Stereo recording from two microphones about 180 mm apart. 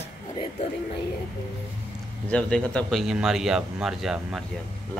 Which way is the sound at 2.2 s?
5° left (ahead or behind).